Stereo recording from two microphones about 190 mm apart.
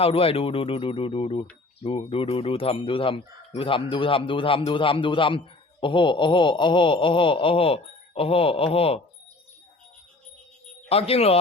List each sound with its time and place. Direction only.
0.0 s speech: 30° left (ahead or behind)
10.8 s speech: 30° left (ahead or behind)